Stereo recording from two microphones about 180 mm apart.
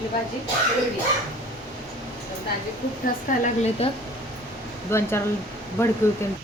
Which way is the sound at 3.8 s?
30° left (ahead or behind).